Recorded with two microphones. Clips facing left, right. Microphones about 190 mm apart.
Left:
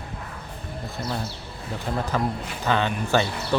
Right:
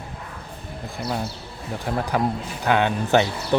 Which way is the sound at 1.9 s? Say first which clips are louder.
Right 3 dB; 10° right (ahead or behind).